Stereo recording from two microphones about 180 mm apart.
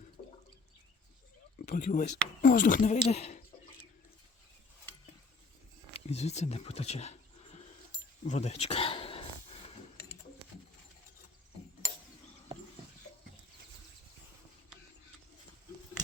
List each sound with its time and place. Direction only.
1.6 s speech: 45° left (ahead or behind)
5.9 s speech: 35° left (ahead or behind)
8.2 s a sound: 35° left (ahead or behind)